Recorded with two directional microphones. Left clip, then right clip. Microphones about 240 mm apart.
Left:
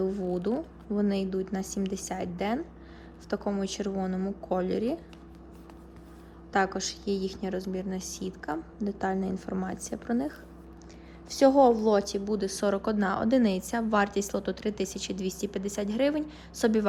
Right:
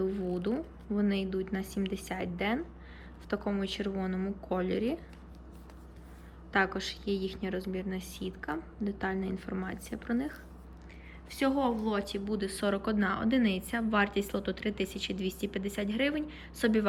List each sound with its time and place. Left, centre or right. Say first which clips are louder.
0.0 s a sound: left 3 dB; centre
0.3 s speech: left 3 dB; centre
6.5 s speech: left 2 dB; centre
11.3 s speech: left 10 dB; left